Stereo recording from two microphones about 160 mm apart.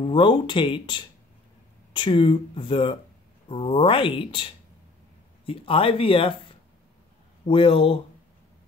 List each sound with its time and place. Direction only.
0.0 s speech: 30° left (ahead or behind)
7.4 s speech: 35° left (ahead or behind)